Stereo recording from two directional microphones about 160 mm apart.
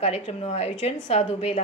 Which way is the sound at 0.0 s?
40° left (ahead or behind).